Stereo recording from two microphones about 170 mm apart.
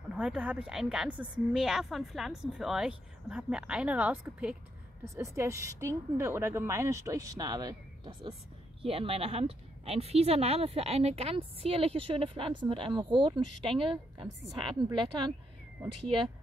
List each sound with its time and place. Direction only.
0.1 s a woman's voice: 5° right (ahead or behind); by 15.3 s 25° right (ahead or behind)